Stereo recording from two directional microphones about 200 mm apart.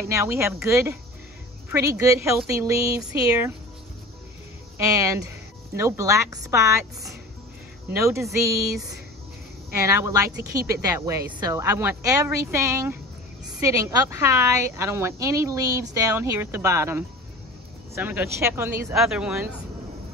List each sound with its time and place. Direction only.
0.0 s a woman's voice: 15° right (ahead or behind)
4.7 s a woman's voice: 15° right (ahead or behind)
9.7 s a woman's voice: 15° right (ahead or behind)